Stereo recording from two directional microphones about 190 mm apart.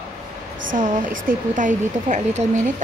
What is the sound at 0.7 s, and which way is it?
A woman's voice, 45° right (ahead or behind).